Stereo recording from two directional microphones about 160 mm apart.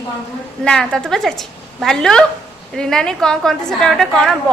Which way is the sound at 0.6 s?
5° left (ahead or behind).